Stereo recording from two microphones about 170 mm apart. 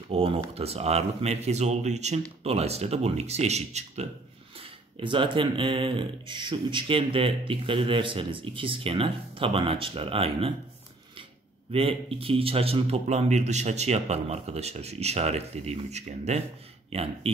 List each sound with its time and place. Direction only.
0.1 s speech: 35° right (ahead or behind)
11.7 s speech: 35° right (ahead or behind)